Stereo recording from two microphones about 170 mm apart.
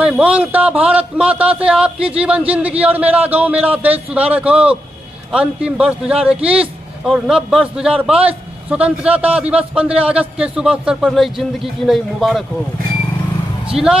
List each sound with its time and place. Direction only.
0.0 s a man's voice: 5° right (ahead or behind)